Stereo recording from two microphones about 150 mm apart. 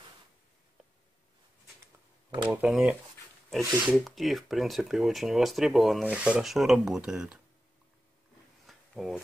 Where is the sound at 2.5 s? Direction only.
10° right (ahead or behind).